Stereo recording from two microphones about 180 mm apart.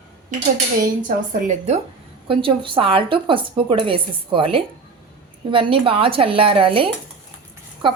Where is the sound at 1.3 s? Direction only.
40° right (ahead or behind).